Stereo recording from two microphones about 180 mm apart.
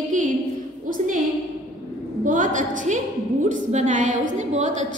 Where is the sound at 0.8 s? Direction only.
50° right (ahead or behind).